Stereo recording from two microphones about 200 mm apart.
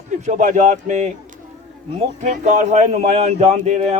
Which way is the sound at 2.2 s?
35° right (ahead or behind).